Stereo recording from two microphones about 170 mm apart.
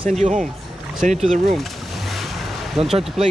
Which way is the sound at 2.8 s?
35° right (ahead or behind).